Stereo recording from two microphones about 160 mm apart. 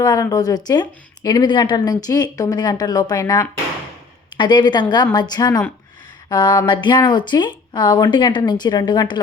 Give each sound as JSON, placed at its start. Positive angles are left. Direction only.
{"t": 0.0, "sound": "speech", "side_deg": 25}